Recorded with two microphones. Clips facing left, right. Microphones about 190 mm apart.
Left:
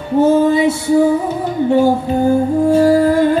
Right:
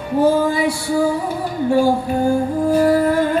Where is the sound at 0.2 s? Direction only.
20° left (ahead or behind).